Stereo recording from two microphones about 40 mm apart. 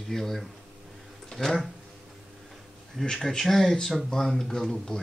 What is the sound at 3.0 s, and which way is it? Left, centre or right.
Speech, centre.